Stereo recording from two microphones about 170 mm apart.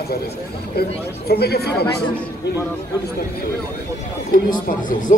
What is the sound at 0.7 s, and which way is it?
Speech, 70° left (ahead or behind).